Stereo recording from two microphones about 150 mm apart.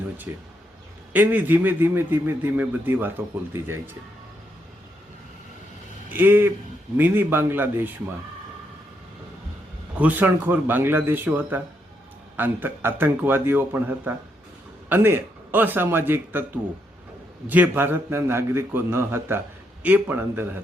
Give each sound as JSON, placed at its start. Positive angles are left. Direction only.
{"t": 0.3, "sound": "a man's voice", "side_deg": -15}
{"t": 6.1, "sound": "a man's voice", "side_deg": -10}
{"t": 10.0, "sound": "a man's voice", "side_deg": -10}